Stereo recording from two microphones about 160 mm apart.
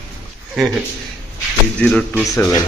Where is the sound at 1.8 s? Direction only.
5° left (ahead or behind).